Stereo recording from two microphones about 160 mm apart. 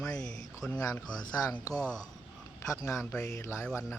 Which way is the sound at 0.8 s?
20° left (ahead or behind).